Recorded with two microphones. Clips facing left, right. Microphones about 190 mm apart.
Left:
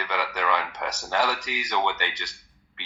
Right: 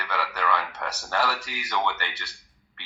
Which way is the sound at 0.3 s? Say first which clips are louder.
Even; 15° left (ahead or behind).